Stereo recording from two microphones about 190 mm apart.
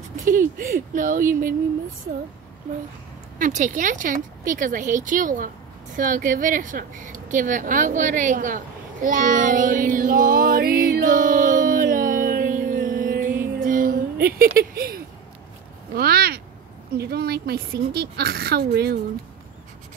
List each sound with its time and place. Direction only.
0.2 s speech: 45° right (ahead or behind)
3.3 s speech: 40° right (ahead or behind)
13.6 s music: 45° right (ahead or behind)
15.9 s a woman's voice: 55° right (ahead or behind)